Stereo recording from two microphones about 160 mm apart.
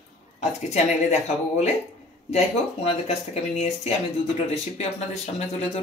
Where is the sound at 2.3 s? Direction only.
40° left (ahead or behind).